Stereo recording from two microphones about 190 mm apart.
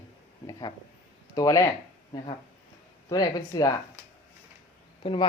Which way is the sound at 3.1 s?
20° left (ahead or behind).